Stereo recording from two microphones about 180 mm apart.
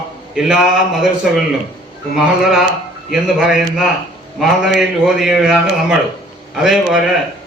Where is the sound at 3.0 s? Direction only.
5° right (ahead or behind).